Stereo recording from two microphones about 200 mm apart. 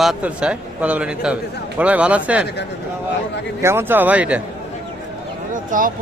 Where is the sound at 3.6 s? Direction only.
10° right (ahead or behind).